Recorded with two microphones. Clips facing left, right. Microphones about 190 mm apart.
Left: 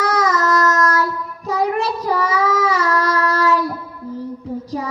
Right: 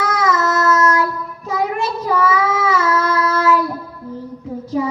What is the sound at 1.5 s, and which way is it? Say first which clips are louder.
Child singing: left 1 dB; 40° left (ahead or behind).